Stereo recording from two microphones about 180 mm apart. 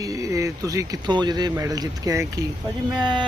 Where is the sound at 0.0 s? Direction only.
20° right (ahead or behind).